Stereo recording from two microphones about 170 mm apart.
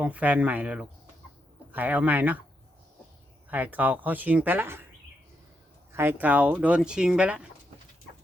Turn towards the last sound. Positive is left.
turn(degrees=-5)  # may be behind; listen again after turning